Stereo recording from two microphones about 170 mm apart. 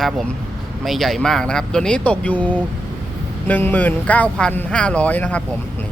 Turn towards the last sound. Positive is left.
turn(degrees=10)  # may be behind; listen again after turning